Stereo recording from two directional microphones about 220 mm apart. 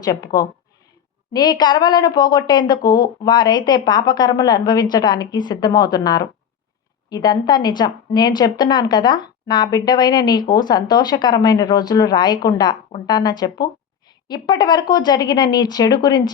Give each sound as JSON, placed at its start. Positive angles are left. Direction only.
{"t": 0.0, "sound": "a woman's voice", "side_deg": 20}